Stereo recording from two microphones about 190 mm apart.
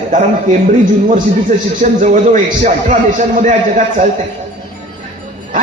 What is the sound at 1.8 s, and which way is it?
A man's voice, 40° right (ahead or behind).